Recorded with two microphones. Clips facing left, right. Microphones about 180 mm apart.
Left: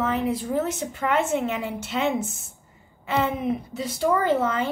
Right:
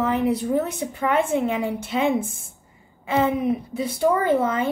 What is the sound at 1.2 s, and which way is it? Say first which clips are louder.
Speech: right 3 dB; 50° right (ahead or behind).